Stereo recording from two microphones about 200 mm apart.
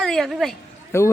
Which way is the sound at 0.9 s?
15° left (ahead or behind).